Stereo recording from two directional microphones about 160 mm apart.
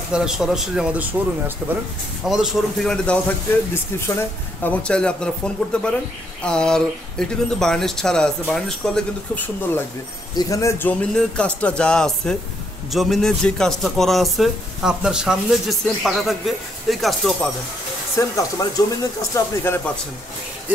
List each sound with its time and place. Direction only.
0.1 s a man's voice: 5° right (ahead or behind)
2.2 s a man's voice: centre (ahead or behind)
3.7 s a man's voice: 15° left (ahead or behind)
18.2 s speech: 20° left (ahead or behind)